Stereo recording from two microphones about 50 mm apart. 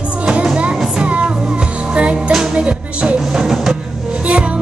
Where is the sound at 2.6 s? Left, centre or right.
Right.